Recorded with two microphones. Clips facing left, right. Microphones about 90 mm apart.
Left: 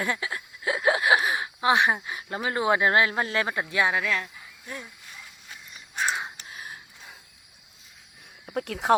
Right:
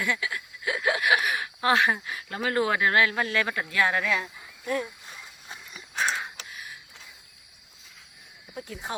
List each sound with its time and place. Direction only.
0.0 s speech: 35° left (ahead or behind); by 3.9 s 20° left (ahead or behind)
3.9 s speech: centre (ahead or behind)
4.6 s speech: 65° right (ahead or behind)
6.1 s a sound: 15° left (ahead or behind)
6.5 s a sound: 35° left (ahead or behind)
8.4 s speech: 75° left (ahead or behind)